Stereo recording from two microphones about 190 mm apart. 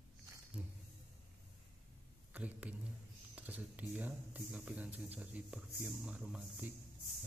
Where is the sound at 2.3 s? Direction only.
10° right (ahead or behind).